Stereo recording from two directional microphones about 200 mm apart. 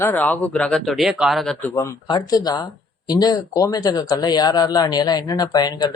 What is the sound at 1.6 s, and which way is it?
Speech, 15° left (ahead or behind).